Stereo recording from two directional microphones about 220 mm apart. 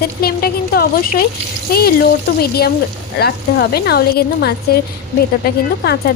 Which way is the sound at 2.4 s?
45° left (ahead or behind).